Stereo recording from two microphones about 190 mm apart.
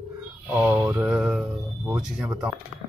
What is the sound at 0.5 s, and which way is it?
Speech, 10° right (ahead or behind).